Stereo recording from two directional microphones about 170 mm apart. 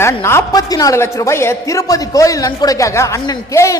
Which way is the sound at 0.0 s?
15° left (ahead or behind).